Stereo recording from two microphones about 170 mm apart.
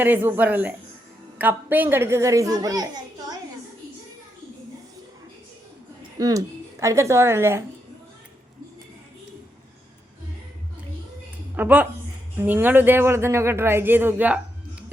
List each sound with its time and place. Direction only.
0.0 s a child's voice: 10° right (ahead or behind)
6.0 s a woman's voice: 20° right (ahead or behind)
11.5 s speech: 10° right (ahead or behind)